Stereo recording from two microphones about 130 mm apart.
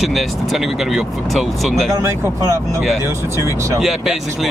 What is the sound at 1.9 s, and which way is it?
Speech, 25° right (ahead or behind).